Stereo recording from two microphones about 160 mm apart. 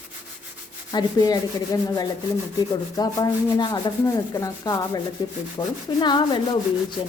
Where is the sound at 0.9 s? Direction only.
25° left (ahead or behind).